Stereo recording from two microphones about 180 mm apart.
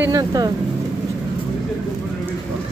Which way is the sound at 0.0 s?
20° right (ahead or behind).